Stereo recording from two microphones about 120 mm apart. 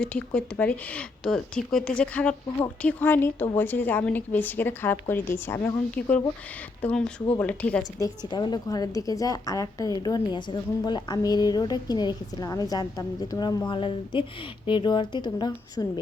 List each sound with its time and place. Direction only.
0.0 s a woman's voice: 10° left (ahead or behind)
8.3 s a woman's voice: 35° left (ahead or behind)
13.7 s a woman's voice: 45° left (ahead or behind)